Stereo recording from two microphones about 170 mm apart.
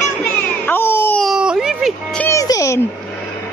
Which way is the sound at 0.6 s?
10° left (ahead or behind).